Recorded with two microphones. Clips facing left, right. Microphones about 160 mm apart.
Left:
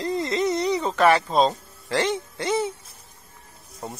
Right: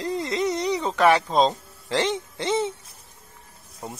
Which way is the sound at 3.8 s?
Centre (ahead or behind).